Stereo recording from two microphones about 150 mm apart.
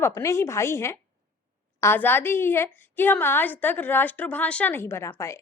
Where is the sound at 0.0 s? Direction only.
20° left (ahead or behind).